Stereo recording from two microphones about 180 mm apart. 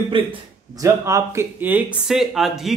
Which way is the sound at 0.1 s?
30° right (ahead or behind).